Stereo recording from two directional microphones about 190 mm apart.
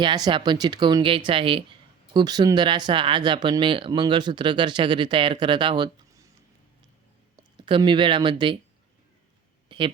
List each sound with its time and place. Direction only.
0.3 s speech: 25° right (ahead or behind)
7.5 s speech: 25° right (ahead or behind)
9.6 s a sound: 25° right (ahead or behind)